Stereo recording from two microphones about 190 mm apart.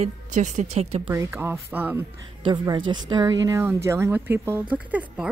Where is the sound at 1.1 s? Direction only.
15° right (ahead or behind).